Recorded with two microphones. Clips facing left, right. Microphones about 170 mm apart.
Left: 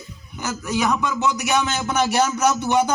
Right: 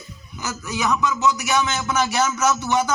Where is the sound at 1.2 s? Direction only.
60° left (ahead or behind).